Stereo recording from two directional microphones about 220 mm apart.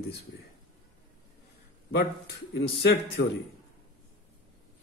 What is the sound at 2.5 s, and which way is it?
Speech, 45° left (ahead or behind).